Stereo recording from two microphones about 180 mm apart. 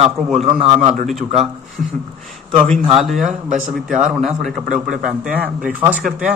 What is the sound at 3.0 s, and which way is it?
Speech, centre (ahead or behind).